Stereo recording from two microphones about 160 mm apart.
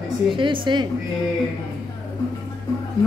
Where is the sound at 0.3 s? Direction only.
30° right (ahead or behind).